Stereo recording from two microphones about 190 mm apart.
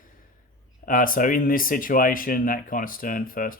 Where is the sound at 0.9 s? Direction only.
45° left (ahead or behind).